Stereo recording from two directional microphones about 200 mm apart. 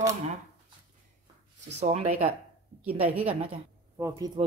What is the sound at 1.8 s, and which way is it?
Speech, 35° right (ahead or behind).